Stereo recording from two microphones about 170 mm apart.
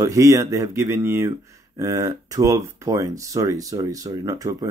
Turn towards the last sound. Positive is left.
turn(degrees=-20)  # may be behind; listen again after turning